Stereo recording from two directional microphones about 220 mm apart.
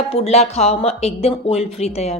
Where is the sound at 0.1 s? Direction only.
30° left (ahead or behind).